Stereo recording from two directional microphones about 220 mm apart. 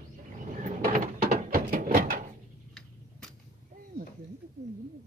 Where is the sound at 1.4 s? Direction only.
40° right (ahead or behind).